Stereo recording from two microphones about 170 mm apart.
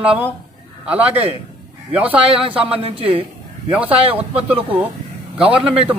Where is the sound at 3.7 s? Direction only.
10° right (ahead or behind).